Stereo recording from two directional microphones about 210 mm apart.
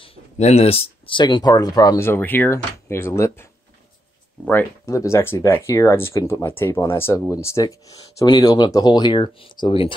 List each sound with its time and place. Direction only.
0.0 s speech: 30° left (ahead or behind); by 3.4 s 10° left (ahead or behind)
4.5 s speech: 10° left (ahead or behind)